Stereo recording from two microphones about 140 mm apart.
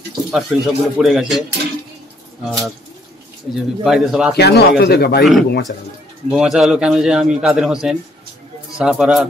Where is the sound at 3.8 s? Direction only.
5° right (ahead or behind).